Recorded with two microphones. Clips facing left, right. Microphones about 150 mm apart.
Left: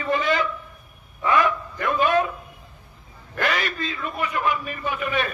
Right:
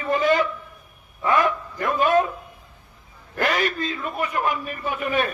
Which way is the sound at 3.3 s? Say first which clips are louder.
Right 2 dB; 40° right (ahead or behind).